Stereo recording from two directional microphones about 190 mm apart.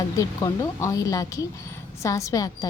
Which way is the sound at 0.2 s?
20° left (ahead or behind).